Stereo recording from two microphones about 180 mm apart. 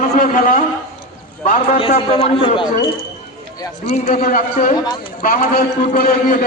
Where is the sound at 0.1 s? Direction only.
50° left (ahead or behind).